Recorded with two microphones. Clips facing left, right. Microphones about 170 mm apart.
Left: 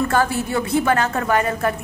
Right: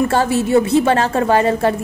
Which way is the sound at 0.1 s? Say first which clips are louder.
Right 6 dB; 25° right (ahead or behind).